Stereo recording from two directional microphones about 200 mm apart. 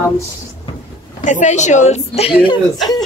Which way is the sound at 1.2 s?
35° left (ahead or behind).